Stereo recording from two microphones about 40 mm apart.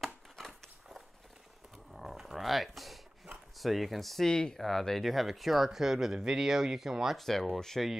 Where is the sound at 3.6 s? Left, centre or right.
Centre.